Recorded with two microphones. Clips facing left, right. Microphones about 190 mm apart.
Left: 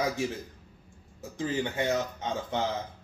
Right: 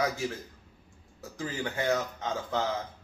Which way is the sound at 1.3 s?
20° left (ahead or behind).